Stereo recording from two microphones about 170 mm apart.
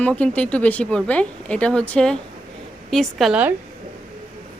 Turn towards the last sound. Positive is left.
turn(degrees=-5)  # may be behind; listen again after turning